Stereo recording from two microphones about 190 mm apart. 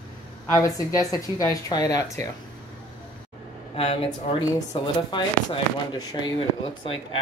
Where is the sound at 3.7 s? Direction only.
30° left (ahead or behind).